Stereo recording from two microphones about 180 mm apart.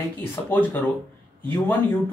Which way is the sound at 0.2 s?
10° left (ahead or behind).